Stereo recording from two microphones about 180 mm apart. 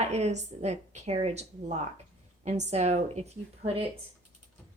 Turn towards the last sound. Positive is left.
turn(degrees=-35)  # may be behind; listen again after turning